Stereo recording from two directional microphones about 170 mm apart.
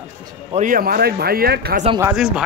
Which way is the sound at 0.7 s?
60° right (ahead or behind).